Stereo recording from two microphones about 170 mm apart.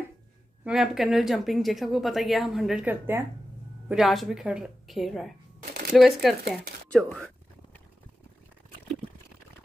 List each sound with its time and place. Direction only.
0.7 s speech: centre (ahead or behind)
3.9 s speech: centre (ahead or behind)
5.6 s shuffling cards: 55° right (ahead or behind)
5.9 s speech: centre (ahead or behind)